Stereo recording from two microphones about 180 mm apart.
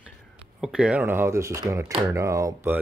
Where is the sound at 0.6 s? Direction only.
5° right (ahead or behind).